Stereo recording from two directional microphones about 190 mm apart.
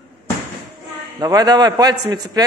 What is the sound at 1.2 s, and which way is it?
A man's voice, 20° right (ahead or behind).